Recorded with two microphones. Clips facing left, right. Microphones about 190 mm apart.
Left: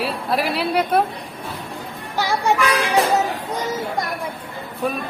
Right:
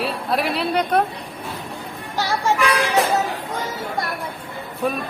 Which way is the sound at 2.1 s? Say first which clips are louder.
Left 1 dB; 15° left (ahead or behind).